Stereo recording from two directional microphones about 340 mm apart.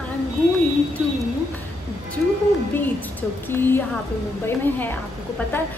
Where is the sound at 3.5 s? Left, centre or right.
Centre.